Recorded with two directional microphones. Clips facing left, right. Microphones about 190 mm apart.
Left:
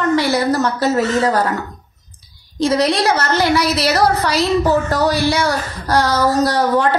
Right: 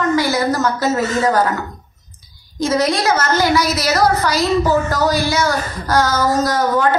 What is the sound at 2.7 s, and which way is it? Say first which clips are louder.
Speech: even; 70° left (ahead or behind).